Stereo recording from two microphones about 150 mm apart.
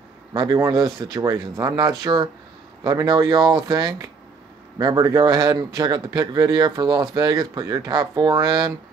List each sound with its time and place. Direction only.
0.3 s a man's voice: 30° right (ahead or behind)